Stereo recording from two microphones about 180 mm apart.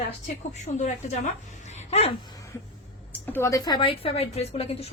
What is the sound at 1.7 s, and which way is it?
Dog, 35° left (ahead or behind).